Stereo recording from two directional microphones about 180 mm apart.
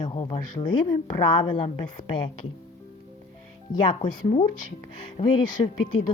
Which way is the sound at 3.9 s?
30° left (ahead or behind).